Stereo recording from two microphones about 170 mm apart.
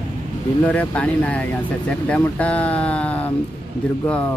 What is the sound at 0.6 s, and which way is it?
Speech, 10° left (ahead or behind).